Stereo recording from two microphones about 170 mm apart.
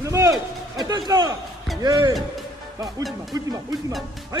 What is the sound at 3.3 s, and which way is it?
Speech, 20° right (ahead or behind).